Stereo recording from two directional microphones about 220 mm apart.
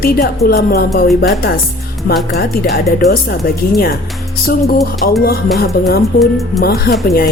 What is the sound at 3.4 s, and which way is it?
Speech, 40° left (ahead or behind).